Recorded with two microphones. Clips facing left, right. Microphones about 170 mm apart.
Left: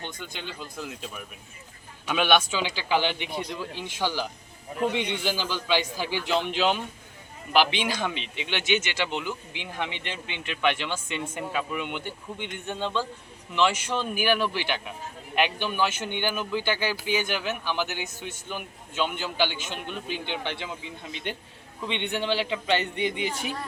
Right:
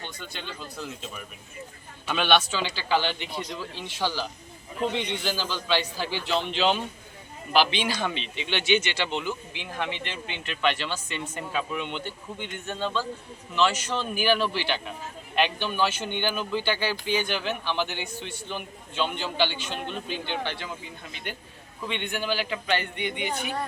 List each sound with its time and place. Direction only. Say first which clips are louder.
0.0 s a man's voice: left 1 dB; 15° left (ahead or behind); by 23.5 s 30° left (ahead or behind)